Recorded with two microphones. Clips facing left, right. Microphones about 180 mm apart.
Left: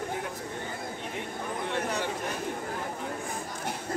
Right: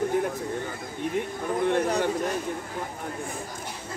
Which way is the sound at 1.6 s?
50° right (ahead or behind).